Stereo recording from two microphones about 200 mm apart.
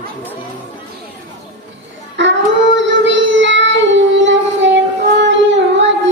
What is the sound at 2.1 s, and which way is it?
Child singing, 65° right (ahead or behind).